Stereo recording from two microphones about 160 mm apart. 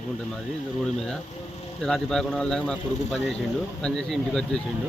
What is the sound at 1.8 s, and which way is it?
Speech, 5° left (ahead or behind).